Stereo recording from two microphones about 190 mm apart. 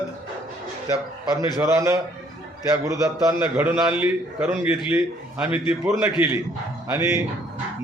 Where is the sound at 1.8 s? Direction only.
15° right (ahead or behind).